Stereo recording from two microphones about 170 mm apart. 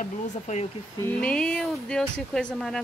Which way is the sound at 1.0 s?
5° left (ahead or behind).